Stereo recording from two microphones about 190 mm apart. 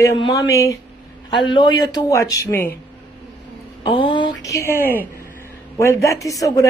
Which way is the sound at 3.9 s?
25° left (ahead or behind).